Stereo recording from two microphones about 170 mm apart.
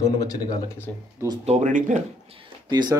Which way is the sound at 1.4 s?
45° right (ahead or behind).